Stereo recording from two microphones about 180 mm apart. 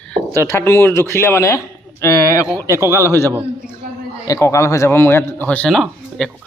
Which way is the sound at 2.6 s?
15° right (ahead or behind).